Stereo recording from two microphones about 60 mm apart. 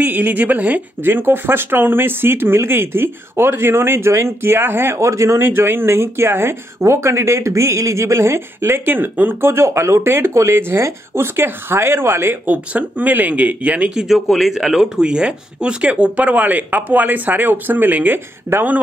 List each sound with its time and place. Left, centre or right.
0.0 s speech: right
1.0 s speech: right
4.9 s speech: right
5.4 s speech: right
12.7 s speech: right
14.3 s speech: centre; by 18.8 s right